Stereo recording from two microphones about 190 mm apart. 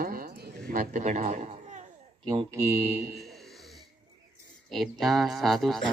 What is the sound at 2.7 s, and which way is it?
Speech, 10° right (ahead or behind).